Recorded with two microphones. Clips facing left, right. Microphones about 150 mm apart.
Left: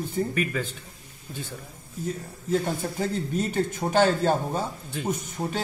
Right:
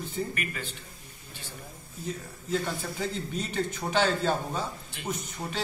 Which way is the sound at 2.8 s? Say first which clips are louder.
Left 5 dB; 45° left (ahead or behind).